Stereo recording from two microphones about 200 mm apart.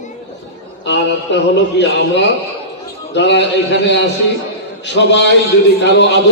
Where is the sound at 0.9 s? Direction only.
60° left (ahead or behind).